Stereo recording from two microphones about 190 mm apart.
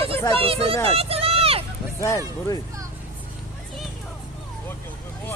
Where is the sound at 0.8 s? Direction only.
30° right (ahead or behind).